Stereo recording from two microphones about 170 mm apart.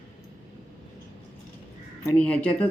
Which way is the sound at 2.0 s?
10° left (ahead or behind).